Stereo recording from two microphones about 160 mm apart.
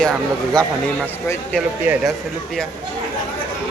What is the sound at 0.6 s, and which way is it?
Speech, 5° left (ahead or behind).